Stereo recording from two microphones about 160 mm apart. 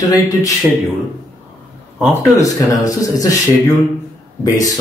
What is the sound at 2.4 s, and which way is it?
Speech, 20° left (ahead or behind).